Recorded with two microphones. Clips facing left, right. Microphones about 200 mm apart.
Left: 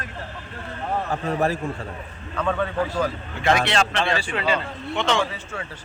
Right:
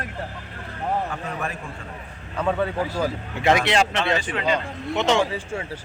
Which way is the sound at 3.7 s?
30° left (ahead or behind).